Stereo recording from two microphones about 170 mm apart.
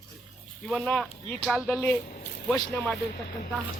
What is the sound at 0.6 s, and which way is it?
Speech, centre (ahead or behind).